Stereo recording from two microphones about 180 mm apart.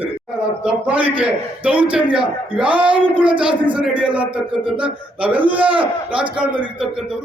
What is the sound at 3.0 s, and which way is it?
Speech, 25° right (ahead or behind).